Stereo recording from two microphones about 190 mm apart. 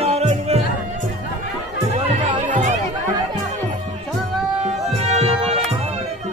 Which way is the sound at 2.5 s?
40° right (ahead or behind).